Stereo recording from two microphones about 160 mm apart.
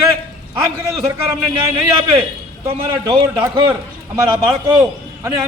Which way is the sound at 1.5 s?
30° right (ahead or behind).